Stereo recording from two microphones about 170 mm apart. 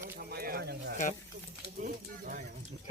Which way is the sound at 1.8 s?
55° right (ahead or behind).